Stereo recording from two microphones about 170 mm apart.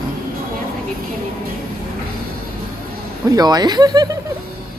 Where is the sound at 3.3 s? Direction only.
20° right (ahead or behind).